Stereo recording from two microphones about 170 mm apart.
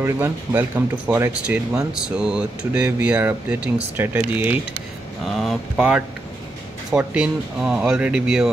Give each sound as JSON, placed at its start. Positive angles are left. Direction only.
{"t": 0.0, "sound": "speech", "side_deg": -15}
{"t": 5.2, "sound": "speech", "side_deg": 0}